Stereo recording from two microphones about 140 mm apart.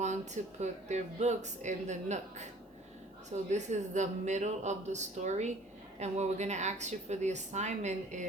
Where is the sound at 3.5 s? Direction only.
55° right (ahead or behind).